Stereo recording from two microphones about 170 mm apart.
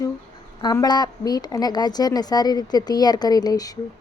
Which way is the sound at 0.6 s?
25° left (ahead or behind).